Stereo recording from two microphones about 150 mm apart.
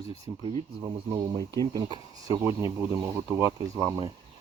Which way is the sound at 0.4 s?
35° right (ahead or behind).